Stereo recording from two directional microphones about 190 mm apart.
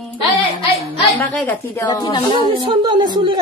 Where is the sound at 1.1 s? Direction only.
10° left (ahead or behind).